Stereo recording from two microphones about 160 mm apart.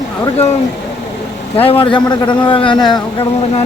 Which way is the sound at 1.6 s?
35° left (ahead or behind).